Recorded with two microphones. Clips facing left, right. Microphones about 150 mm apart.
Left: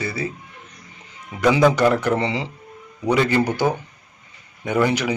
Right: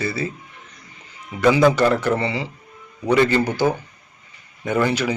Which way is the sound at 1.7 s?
15° left (ahead or behind).